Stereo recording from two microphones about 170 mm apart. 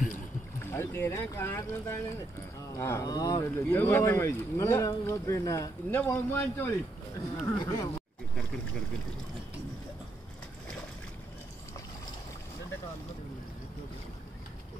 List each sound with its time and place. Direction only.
0.7 s speech: 15° left (ahead or behind)